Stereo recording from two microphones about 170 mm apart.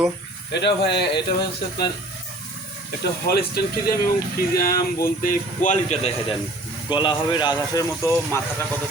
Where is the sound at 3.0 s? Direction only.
65° left (ahead or behind); by 6.1 s 45° left (ahead or behind).